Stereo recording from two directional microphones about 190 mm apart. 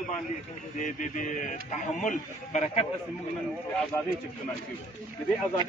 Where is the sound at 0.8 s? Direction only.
40° left (ahead or behind).